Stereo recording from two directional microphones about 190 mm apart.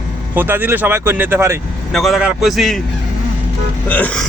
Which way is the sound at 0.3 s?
10° right (ahead or behind).